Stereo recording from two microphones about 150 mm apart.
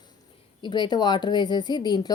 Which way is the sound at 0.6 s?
30° left (ahead or behind).